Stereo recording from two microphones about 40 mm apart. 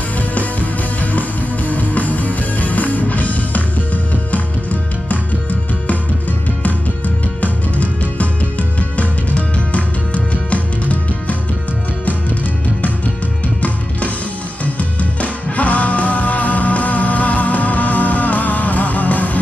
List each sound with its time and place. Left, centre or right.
0.3 s music: left
1.7 s music: left
7.4 s music: left
14.6 s music: left